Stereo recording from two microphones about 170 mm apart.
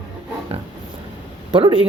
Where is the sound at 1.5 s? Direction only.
30° right (ahead or behind).